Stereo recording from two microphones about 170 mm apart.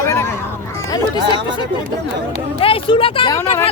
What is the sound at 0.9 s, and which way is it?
Speech, 30° left (ahead or behind).